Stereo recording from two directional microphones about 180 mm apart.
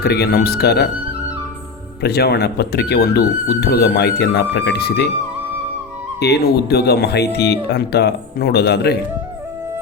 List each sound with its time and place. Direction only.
0.0 s speech: 65° left (ahead or behind)
2.0 s speech: 60° left (ahead or behind)
6.1 s speech: 65° left (ahead or behind)